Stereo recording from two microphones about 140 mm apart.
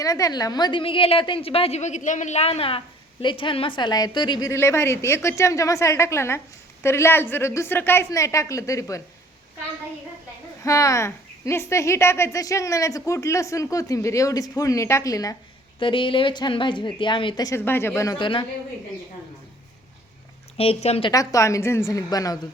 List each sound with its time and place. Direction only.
0.0 s a woman's voice: 25° left (ahead or behind)
10.6 s speech: 20° left (ahead or behind)
15.8 s a woman's voice: 35° left (ahead or behind)
17.7 s speech: 15° left (ahead or behind)
18.2 s a woman's voice: 35° left (ahead or behind)
20.6 s a woman's voice: 45° left (ahead or behind)
21.1 s speech: 25° left (ahead or behind)